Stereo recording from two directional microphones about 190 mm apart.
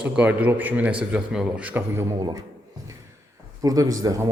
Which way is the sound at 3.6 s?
20° right (ahead or behind).